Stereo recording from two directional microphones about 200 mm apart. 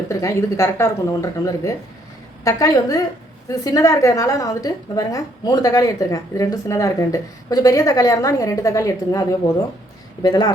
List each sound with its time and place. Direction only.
0.1 s a woman's voice: 15° left (ahead or behind)
10.2 s speech: 20° left (ahead or behind)